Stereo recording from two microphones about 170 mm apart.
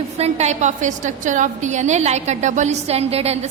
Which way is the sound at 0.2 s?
40° right (ahead or behind).